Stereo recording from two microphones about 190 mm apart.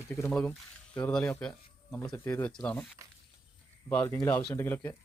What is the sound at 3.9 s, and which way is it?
Speech, 15° left (ahead or behind).